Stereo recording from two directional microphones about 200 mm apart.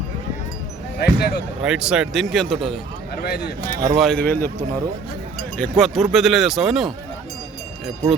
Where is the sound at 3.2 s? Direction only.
55° left (ahead or behind).